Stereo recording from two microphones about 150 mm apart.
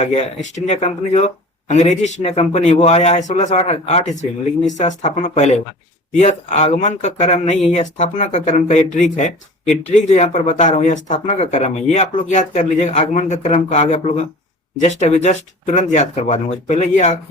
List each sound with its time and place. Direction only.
0.0 s speech: 45° left (ahead or behind)